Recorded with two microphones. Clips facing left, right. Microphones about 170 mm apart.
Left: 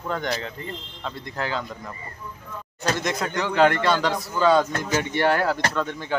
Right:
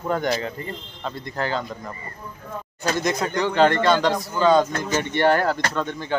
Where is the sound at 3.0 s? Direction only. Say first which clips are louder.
Right 3 dB; centre (ahead or behind).